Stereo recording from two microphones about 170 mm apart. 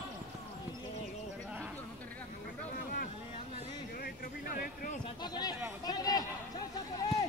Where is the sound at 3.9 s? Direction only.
60° left (ahead or behind).